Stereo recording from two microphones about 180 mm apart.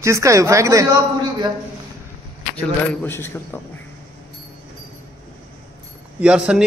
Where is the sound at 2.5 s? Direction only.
10° left (ahead or behind).